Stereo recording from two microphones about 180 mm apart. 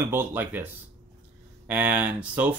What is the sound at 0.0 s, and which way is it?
Speech, 10° right (ahead or behind).